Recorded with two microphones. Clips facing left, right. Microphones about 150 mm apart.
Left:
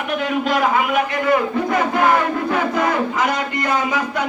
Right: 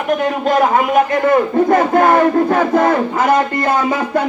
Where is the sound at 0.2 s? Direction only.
45° right (ahead or behind).